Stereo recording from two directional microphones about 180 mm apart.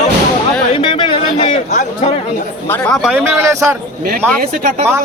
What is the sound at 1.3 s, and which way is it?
Speech, 40° left (ahead or behind).